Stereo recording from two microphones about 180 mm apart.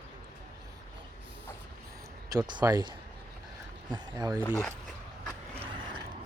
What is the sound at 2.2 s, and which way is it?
Speech, 20° right (ahead or behind).